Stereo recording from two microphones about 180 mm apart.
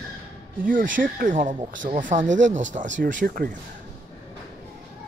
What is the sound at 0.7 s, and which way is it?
Speech, 50° right (ahead or behind).